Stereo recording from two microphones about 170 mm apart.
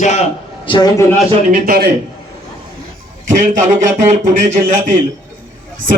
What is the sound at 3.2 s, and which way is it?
A man's voice, 50° right (ahead or behind).